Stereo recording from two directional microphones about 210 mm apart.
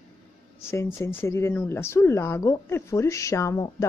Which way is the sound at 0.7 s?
15° left (ahead or behind).